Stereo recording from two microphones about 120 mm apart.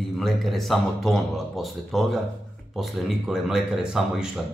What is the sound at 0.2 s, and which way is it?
Speech, centre (ahead or behind).